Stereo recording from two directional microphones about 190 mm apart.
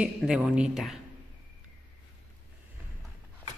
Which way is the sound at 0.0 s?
5° right (ahead or behind).